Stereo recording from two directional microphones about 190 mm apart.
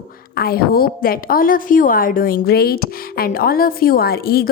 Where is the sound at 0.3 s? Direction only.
55° left (ahead or behind).